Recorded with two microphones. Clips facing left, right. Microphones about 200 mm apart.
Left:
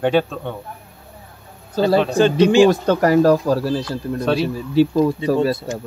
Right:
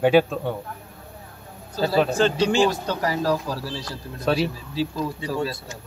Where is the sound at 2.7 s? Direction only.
55° left (ahead or behind).